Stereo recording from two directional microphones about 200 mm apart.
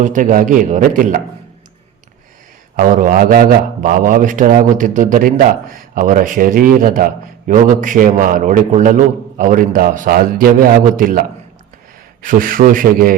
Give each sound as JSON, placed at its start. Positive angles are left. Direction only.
{"t": 0.0, "sound": "a man's voice", "side_deg": -40}
{"t": 2.7, "sound": "a man's voice", "side_deg": -40}